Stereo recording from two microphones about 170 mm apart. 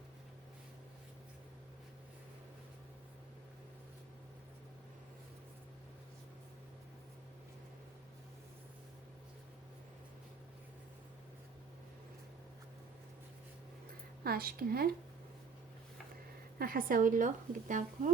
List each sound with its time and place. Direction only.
14.3 s a woman's voice: 60° right (ahead or behind)
16.6 s a woman's voice: 60° right (ahead or behind)